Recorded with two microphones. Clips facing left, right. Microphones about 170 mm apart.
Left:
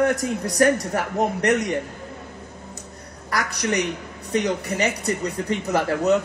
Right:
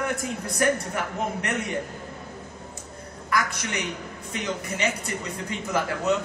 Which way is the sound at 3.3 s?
40° left (ahead or behind).